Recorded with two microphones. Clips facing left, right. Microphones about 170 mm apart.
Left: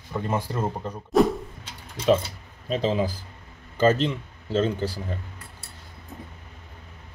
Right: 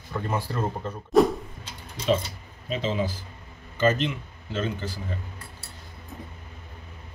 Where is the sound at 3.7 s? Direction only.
35° left (ahead or behind).